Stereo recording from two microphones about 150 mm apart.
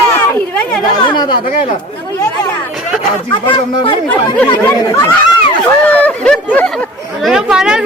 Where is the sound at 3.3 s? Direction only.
35° left (ahead or behind).